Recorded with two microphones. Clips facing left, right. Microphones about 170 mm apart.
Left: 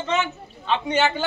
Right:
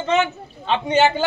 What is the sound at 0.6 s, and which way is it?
Speech, 30° right (ahead or behind).